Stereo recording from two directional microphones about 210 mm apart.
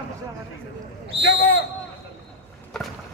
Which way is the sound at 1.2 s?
55° left (ahead or behind).